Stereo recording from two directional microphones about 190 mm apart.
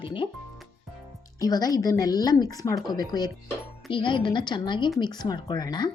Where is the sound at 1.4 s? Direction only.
20° left (ahead or behind).